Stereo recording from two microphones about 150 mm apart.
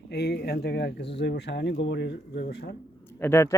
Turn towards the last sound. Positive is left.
turn(degrees=15)  # may be behind; listen again after turning